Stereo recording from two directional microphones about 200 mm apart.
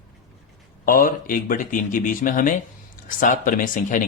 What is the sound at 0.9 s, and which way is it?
Speech, 45° left (ahead or behind).